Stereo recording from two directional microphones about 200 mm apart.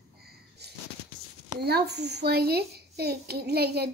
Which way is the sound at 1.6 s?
55° right (ahead or behind).